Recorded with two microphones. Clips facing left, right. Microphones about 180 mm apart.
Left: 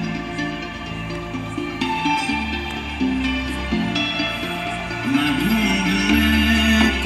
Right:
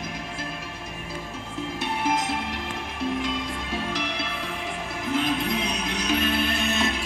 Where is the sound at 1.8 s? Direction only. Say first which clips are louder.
Left 3 dB; 70° left (ahead or behind).